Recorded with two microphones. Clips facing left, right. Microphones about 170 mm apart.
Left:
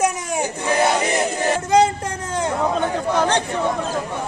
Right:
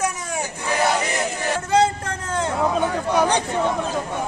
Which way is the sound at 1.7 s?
15° left (ahead or behind).